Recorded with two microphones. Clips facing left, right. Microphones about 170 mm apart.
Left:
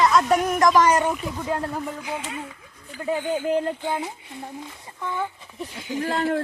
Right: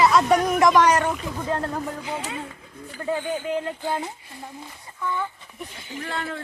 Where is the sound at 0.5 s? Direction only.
Centre (ahead or behind).